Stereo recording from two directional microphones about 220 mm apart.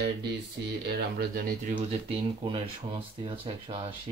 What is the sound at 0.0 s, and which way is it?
Speech, 50° right (ahead or behind).